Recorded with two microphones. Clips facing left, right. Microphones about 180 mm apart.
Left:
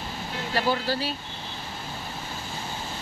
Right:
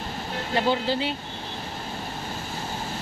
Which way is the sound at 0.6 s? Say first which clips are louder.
Right 2 dB; 20° right (ahead or behind).